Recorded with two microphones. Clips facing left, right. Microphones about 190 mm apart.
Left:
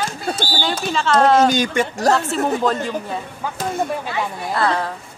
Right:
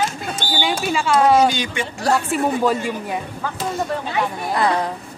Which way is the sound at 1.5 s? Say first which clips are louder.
Left 5 dB; 45° left (ahead or behind).